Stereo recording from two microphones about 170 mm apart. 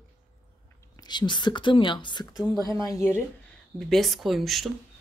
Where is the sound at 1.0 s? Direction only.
25° left (ahead or behind).